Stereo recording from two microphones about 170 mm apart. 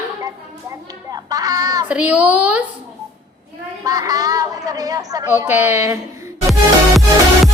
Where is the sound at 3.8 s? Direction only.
20° right (ahead or behind).